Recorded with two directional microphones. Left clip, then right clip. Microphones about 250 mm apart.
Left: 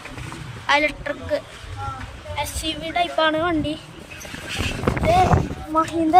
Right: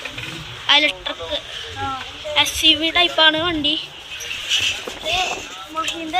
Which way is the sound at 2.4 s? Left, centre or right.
Centre.